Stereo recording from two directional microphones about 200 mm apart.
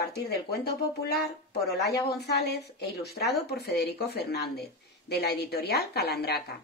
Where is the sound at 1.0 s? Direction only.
55° left (ahead or behind).